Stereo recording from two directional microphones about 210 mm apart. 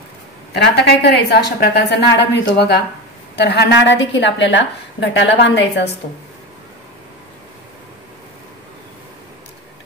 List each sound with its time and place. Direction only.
0.5 s a woman's voice: 55° left (ahead or behind)